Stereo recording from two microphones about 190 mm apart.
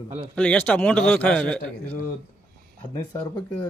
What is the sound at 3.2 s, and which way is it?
Speech, 20° left (ahead or behind).